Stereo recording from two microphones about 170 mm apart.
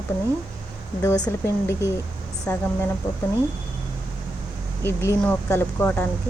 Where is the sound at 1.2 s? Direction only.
15° left (ahead or behind).